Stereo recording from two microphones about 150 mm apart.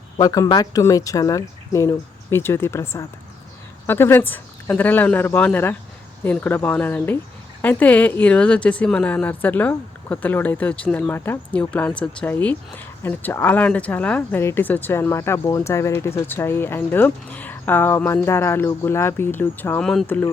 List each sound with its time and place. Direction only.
0.2 s speech: 25° left (ahead or behind); by 20.2 s 5° left (ahead or behind)